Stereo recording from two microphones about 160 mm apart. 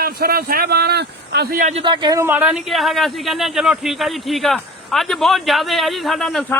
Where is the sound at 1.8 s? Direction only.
30° right (ahead or behind).